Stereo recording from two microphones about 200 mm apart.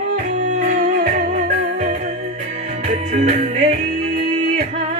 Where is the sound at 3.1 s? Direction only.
30° right (ahead or behind).